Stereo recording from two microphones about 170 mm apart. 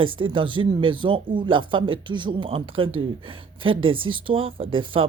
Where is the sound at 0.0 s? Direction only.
30° right (ahead or behind).